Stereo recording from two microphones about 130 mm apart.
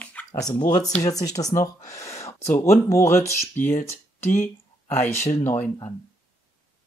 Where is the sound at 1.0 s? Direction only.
25° left (ahead or behind).